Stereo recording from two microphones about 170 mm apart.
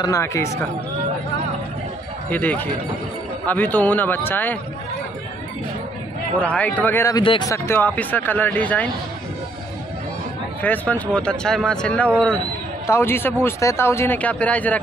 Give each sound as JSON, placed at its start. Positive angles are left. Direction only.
{"t": 0.0, "sound": "speech", "side_deg": 20}
{"t": 2.2, "sound": "speech", "side_deg": 10}
{"t": 6.4, "sound": "speech", "side_deg": 10}
{"t": 10.6, "sound": "speech", "side_deg": 10}